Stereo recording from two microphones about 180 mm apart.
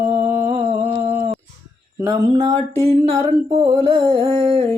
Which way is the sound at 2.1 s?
30° right (ahead or behind).